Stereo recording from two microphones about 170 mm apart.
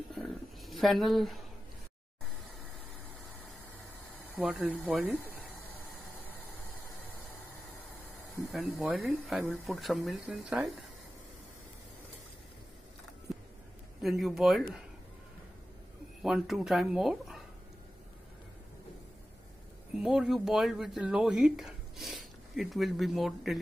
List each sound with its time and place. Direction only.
0.2 s a sound: centre (ahead or behind)
4.4 s speech: 5° right (ahead or behind)
8.5 s speech: centre (ahead or behind)
13.3 s a sound: centre (ahead or behind)
14.0 s speech: centre (ahead or behind)
16.2 s speech: centre (ahead or behind)
20.0 s speech: centre (ahead or behind)